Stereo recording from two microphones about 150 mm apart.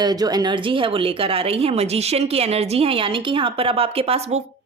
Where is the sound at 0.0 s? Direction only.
25° right (ahead or behind).